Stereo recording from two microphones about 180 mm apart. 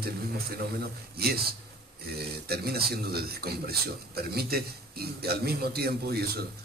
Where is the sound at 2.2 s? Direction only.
60° right (ahead or behind).